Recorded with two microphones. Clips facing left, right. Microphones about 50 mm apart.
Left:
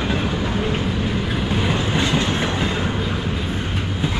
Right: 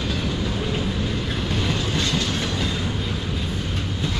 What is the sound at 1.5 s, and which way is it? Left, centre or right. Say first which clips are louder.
Train: left 4 dB; left.